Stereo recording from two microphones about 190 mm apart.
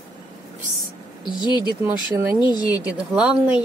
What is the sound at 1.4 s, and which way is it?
Speech, 25° left (ahead or behind).